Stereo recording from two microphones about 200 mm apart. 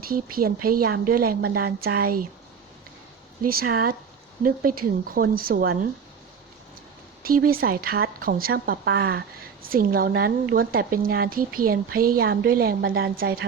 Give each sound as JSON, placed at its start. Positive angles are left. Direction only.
{"t": 0.1, "sound": "a woman's voice", "side_deg": -45}
{"t": 3.4, "sound": "a woman's voice", "side_deg": -45}
{"t": 7.2, "sound": "a woman's voice", "side_deg": -45}